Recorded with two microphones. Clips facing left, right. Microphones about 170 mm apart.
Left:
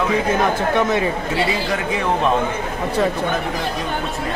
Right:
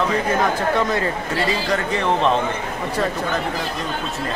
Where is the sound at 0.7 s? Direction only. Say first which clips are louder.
Left 2 dB; 15° left (ahead or behind).